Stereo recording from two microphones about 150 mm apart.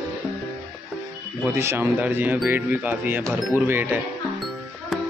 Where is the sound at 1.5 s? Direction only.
15° right (ahead or behind).